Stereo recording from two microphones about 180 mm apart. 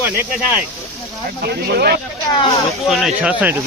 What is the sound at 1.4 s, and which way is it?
Speech, 60° right (ahead or behind).